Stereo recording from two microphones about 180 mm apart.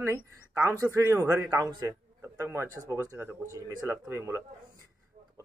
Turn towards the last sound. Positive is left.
turn(degrees=-15)  # may be behind; listen again after turning